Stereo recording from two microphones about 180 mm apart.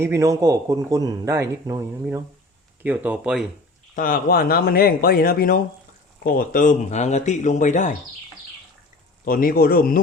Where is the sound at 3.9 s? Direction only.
50° left (ahead or behind).